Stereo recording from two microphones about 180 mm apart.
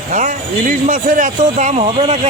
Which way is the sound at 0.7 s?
45° right (ahead or behind).